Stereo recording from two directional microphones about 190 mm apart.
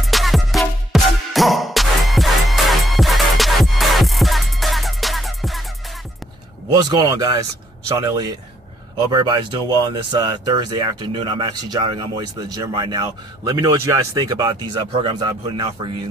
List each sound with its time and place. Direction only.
0.0 s music: centre (ahead or behind)
6.7 s speech: 20° right (ahead or behind)